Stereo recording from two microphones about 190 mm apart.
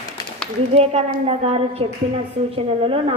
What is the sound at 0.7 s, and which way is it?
A man's voice, 30° right (ahead or behind).